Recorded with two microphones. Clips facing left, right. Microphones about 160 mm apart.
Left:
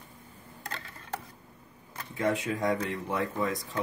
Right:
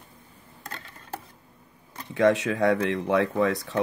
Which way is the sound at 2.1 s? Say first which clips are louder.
Right 8 dB; 80° right.